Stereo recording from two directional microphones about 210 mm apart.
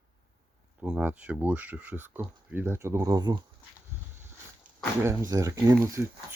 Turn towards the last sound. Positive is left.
turn(degrees=-15)  # may be behind; listen again after turning